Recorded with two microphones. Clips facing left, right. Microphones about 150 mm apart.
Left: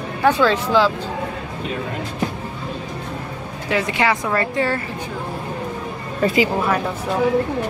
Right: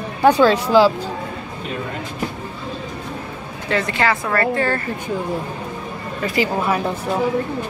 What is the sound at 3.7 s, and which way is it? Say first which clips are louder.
Speech: even; 15° left (ahead or behind).